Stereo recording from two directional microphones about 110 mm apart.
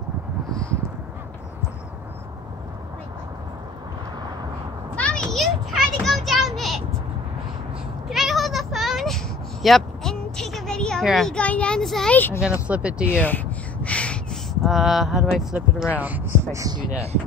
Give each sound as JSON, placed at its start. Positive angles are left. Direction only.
{"t": 4.9, "sound": "children playing", "side_deg": 10}
{"t": 8.1, "sound": "a sound", "side_deg": 0}
{"t": 11.1, "sound": "a child's voice", "side_deg": 5}
{"t": 12.1, "sound": "speech", "side_deg": 15}
{"t": 12.6, "sound": "speech", "side_deg": -10}
{"t": 13.0, "sound": "speech", "side_deg": 15}
{"t": 16.5, "sound": "speech", "side_deg": -35}